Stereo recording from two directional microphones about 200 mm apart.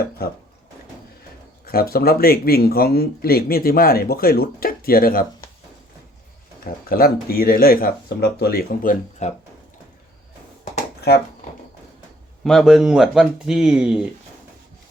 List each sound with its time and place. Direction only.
0.2 s speech: 50° left (ahead or behind)
1.6 s speech: 50° left (ahead or behind)
6.7 s speech: 45° left (ahead or behind)
11.1 s speech: 55° left (ahead or behind)
12.5 s speech: centre (ahead or behind)